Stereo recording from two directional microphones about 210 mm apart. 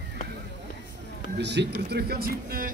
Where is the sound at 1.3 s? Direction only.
55° right (ahead or behind).